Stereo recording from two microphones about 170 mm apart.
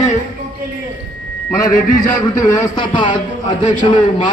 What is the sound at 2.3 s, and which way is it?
A man's voice, 25° left (ahead or behind).